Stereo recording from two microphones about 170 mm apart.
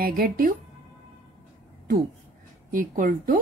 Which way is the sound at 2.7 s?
55° right (ahead or behind).